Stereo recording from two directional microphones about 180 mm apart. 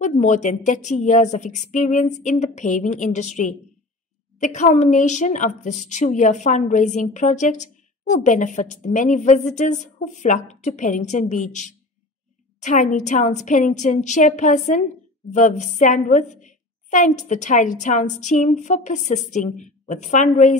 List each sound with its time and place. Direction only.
0.0 s a woman's voice: 40° left (ahead or behind)
12.9 s a woman's voice: 40° left (ahead or behind)